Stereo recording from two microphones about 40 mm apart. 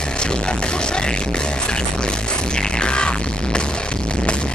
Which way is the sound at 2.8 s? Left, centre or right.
Left.